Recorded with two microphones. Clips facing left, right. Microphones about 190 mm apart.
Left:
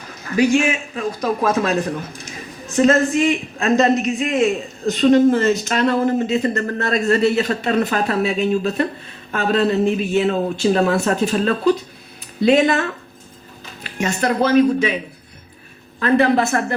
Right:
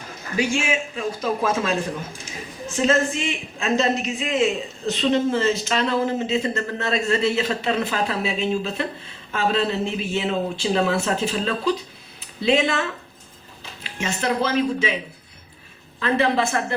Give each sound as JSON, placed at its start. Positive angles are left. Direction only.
{"t": 0.3, "sound": "a man's voice", "side_deg": 55}
{"t": 16.0, "sound": "speech", "side_deg": 50}